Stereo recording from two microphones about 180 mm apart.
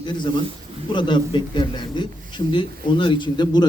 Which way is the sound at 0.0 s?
25° left (ahead or behind).